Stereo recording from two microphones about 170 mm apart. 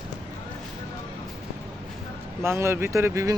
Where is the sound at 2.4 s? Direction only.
15° right (ahead or behind).